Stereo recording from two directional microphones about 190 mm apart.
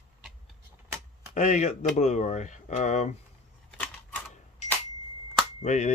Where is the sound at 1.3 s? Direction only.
40° left (ahead or behind).